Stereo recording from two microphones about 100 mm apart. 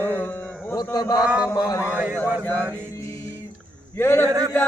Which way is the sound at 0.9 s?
40° left (ahead or behind).